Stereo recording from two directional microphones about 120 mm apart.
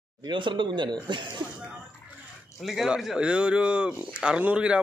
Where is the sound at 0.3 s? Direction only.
40° right (ahead or behind).